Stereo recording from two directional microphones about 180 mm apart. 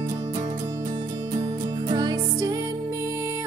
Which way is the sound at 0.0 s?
20° right (ahead or behind).